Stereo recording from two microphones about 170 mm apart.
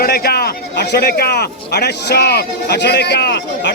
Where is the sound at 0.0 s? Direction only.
65° left (ahead or behind).